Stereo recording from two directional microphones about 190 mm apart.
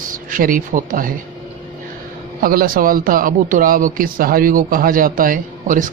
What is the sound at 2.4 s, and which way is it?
A man's voice, 50° right (ahead or behind).